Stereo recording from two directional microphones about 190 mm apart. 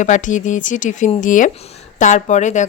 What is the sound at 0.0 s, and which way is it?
A woman's voice, 40° left (ahead or behind).